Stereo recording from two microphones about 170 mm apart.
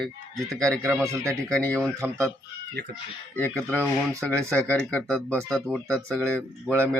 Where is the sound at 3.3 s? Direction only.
10° left (ahead or behind).